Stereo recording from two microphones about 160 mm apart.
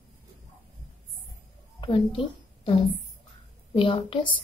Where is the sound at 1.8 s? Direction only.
35° left (ahead or behind).